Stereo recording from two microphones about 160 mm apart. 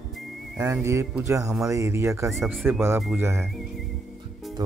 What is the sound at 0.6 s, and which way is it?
Speech, 20° right (ahead or behind).